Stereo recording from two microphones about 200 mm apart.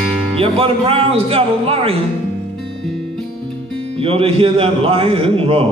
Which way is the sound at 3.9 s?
30° right (ahead or behind).